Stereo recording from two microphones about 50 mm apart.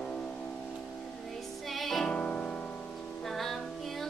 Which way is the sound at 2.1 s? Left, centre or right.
Left.